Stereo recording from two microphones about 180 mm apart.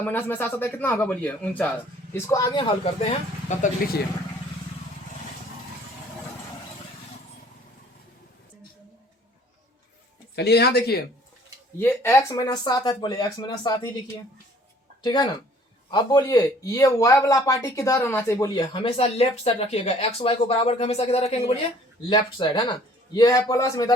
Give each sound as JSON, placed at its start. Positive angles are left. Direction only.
{"t": 0.0, "sound": "speech", "side_deg": 10}
{"t": 2.1, "sound": "speech", "side_deg": 20}
{"t": 3.5, "sound": "speech", "side_deg": 40}
{"t": 10.3, "sound": "speech", "side_deg": 65}
{"t": 11.8, "sound": "speech", "side_deg": 10}
{"t": 15.0, "sound": "speech", "side_deg": 25}